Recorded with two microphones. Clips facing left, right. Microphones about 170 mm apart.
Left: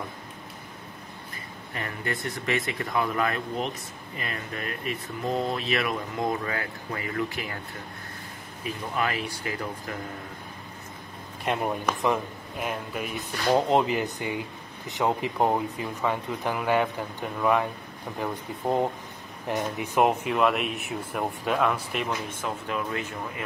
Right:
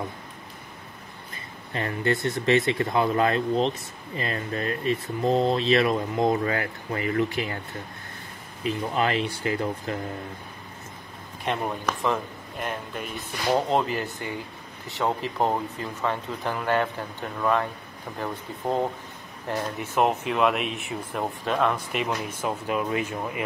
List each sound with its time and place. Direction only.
1.7 s speech: 30° right (ahead or behind)
8.6 s speech: 25° right (ahead or behind)
11.4 s speech: 5° left (ahead or behind)
13.6 s speech: 20° left (ahead or behind)
20.2 s speech: centre (ahead or behind)
22.1 s speech: 20° right (ahead or behind)